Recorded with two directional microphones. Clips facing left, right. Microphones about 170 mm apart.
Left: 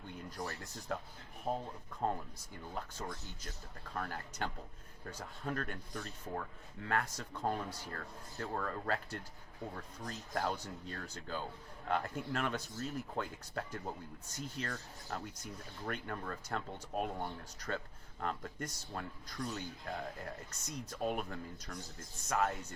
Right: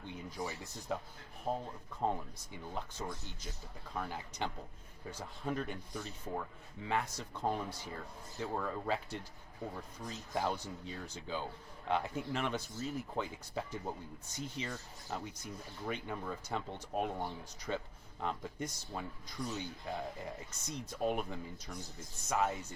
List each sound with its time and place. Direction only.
0.2 s speech: 5° right (ahead or behind)